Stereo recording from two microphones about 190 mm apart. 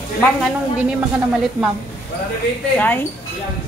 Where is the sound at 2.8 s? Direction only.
10° left (ahead or behind).